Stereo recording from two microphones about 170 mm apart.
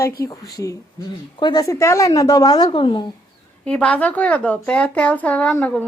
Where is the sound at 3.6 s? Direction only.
5° left (ahead or behind).